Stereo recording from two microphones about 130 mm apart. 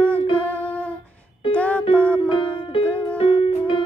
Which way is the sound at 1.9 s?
20° right (ahead or behind).